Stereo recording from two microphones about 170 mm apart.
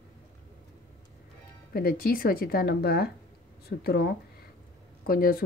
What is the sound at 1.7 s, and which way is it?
Speech, 60° left (ahead or behind).